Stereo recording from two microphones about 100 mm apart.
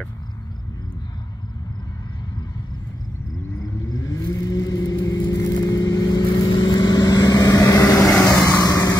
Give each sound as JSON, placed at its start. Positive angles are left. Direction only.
{"t": 3.9, "sound": "vehicle", "side_deg": 35}